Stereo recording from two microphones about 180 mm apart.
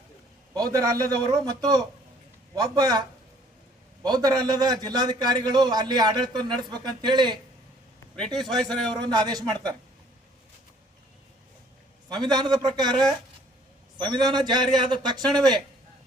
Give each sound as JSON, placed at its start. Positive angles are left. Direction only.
{"t": 0.5, "sound": "a man's voice", "side_deg": -20}
{"t": 4.0, "sound": "a man's voice", "side_deg": -20}
{"t": 8.1, "sound": "a man's voice", "side_deg": 5}
{"t": 9.0, "sound": "a man's voice", "side_deg": -20}
{"t": 12.0, "sound": "a man's voice", "side_deg": -25}
{"t": 14.0, "sound": "a man's voice", "side_deg": -25}